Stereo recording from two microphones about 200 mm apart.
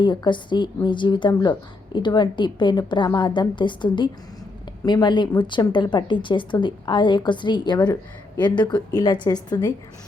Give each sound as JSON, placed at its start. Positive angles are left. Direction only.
{"t": 0.0, "sound": "a woman's voice", "side_deg": 20}